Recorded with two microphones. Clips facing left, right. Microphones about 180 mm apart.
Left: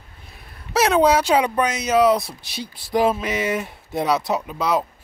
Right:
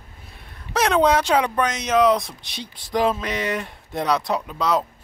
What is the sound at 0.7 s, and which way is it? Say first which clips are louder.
Speech: left 2 dB; 5° left (ahead or behind).